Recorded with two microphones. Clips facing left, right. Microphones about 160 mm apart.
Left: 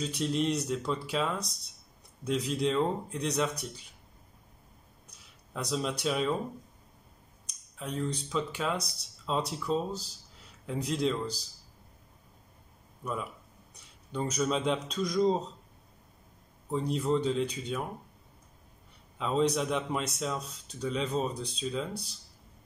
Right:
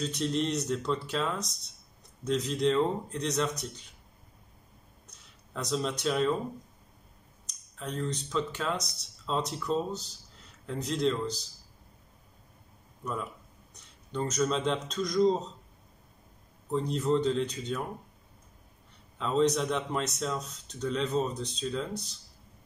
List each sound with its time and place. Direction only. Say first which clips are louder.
0.0 s speech: even; 5° left (ahead or behind)
5.5 s speech: right 1 dB; 5° left (ahead or behind)
7.8 s speech: even; 10° left (ahead or behind)
13.0 s speech: even; 5° left (ahead or behind)
16.7 s speech: right 1 dB; 5° left (ahead or behind)
19.1 s speech: right 1 dB; 5° left (ahead or behind)